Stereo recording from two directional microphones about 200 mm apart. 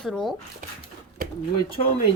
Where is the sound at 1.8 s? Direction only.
30° left (ahead or behind).